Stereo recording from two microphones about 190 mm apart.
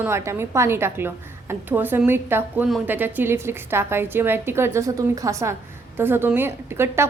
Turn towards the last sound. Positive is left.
turn(degrees=-15)  # may be behind; listen again after turning